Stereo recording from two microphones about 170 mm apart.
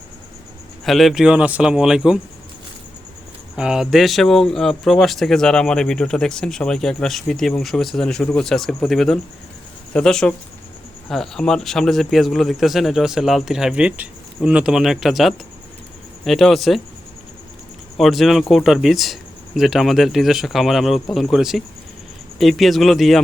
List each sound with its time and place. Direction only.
0.9 s speech: centre (ahead or behind)
3.5 s speech: 5° right (ahead or behind)
17.9 s speech: centre (ahead or behind)